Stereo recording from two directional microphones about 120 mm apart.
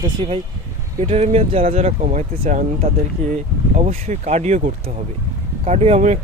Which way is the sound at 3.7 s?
70° right (ahead or behind).